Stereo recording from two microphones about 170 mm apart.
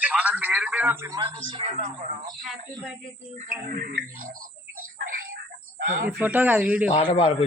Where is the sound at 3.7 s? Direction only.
55° right (ahead or behind).